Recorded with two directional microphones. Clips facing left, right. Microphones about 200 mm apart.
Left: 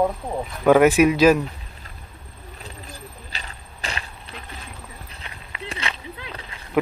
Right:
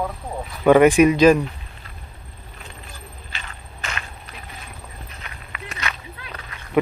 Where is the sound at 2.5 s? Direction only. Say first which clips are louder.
Left 2 dB; 40° left (ahead or behind).